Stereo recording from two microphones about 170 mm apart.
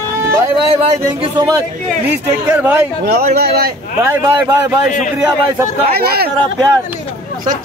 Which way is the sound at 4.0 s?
15° right (ahead or behind).